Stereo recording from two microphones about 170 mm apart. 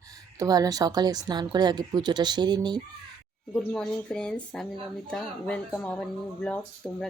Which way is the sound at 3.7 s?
5° left (ahead or behind).